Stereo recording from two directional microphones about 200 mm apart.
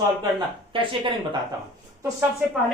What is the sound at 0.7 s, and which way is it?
Speech, 25° right (ahead or behind).